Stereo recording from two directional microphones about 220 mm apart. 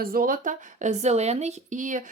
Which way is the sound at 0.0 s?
40° right (ahead or behind).